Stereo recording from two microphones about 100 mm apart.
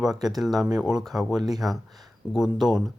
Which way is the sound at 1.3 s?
40° right (ahead or behind).